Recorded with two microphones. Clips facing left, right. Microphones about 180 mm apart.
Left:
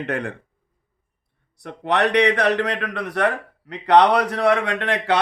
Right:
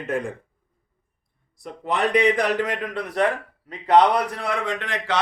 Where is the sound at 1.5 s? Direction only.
75° left (ahead or behind).